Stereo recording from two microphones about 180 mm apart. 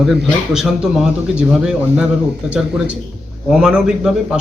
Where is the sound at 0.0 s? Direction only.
Centre (ahead or behind).